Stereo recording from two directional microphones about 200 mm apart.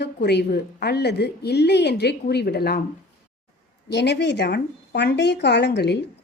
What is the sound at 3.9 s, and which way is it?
Speech, 55° left (ahead or behind).